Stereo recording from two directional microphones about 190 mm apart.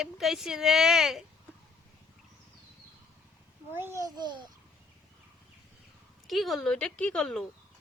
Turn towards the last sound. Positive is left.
turn(degrees=5)  # may be behind; listen again after turning